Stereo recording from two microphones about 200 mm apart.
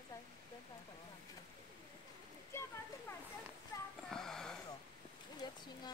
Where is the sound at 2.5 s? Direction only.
10° left (ahead or behind).